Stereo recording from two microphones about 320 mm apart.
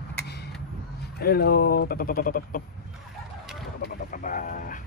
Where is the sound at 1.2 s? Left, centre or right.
Left.